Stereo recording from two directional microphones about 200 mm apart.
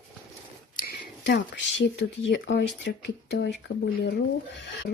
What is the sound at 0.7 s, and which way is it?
Speech, 55° left (ahead or behind).